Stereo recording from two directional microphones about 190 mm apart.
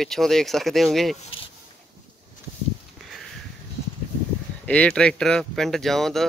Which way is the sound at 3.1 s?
Centre (ahead or behind).